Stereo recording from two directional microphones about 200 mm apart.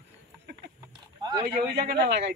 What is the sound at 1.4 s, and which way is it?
Speech, 55° right (ahead or behind).